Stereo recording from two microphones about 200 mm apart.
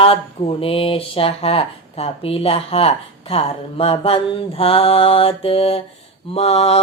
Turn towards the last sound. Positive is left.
turn(degrees=30)  # may be behind; listen again after turning